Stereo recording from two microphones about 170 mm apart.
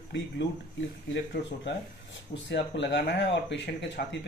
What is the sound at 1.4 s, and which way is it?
Speech, 90° left.